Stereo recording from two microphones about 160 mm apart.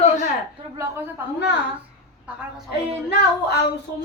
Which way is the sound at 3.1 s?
90° left.